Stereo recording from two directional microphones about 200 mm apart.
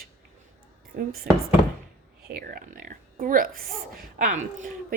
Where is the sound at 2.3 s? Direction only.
45° right (ahead or behind).